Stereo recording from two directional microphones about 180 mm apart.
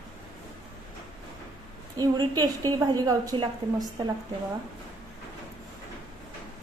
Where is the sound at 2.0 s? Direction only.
20° right (ahead or behind).